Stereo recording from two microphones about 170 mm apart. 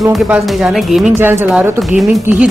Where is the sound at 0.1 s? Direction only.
Centre (ahead or behind).